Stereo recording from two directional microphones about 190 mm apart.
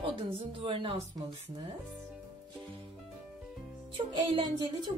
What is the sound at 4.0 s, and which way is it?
Music, 30° right (ahead or behind).